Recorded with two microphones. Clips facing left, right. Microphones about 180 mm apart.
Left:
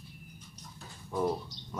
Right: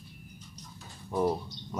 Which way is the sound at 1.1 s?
10° right (ahead or behind).